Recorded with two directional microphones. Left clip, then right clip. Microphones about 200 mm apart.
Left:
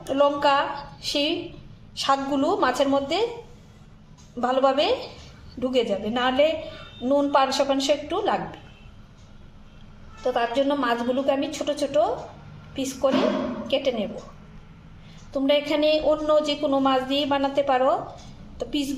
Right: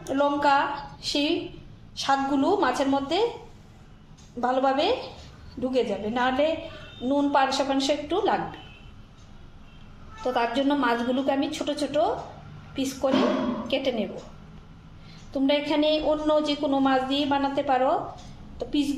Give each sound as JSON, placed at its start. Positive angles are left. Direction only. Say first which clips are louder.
{"t": 0.0, "sound": "a woman's voice", "louder": "left 3 dB", "side_deg": 10}
{"t": 4.4, "sound": "a woman's voice", "louder": "left 2 dB", "side_deg": 10}
{"t": 10.2, "sound": "a woman's voice", "louder": "left 2 dB", "side_deg": 0}
{"t": 15.3, "sound": "a woman's voice", "louder": "left 2 dB", "side_deg": 5}